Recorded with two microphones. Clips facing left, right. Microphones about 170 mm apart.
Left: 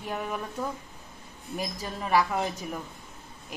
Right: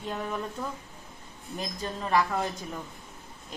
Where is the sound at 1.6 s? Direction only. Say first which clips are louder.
Even; 10° left (ahead or behind).